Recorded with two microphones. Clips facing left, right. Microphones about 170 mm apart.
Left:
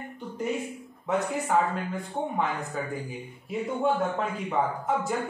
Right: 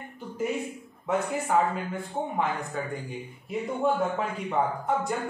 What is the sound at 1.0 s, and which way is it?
A man's voice, centre (ahead or behind).